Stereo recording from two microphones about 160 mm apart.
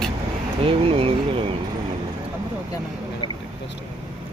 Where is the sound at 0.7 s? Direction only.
35° right (ahead or behind).